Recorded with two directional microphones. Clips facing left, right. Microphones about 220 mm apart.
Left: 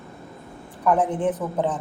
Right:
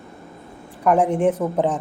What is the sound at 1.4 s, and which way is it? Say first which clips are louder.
Speech: right 5 dB; 35° right (ahead or behind).